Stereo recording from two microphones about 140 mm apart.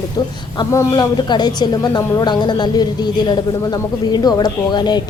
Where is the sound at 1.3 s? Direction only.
30° left (ahead or behind).